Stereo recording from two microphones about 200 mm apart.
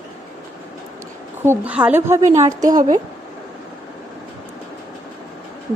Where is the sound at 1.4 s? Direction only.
10° right (ahead or behind).